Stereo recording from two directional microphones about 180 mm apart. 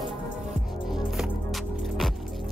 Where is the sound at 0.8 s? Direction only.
Centre (ahead or behind).